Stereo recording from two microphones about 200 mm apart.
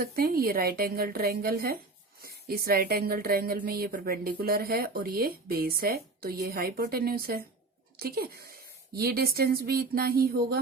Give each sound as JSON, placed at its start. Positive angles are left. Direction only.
{"t": 0.0, "sound": "speech", "side_deg": -50}